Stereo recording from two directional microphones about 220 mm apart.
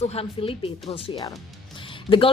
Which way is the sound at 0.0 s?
25° left (ahead or behind).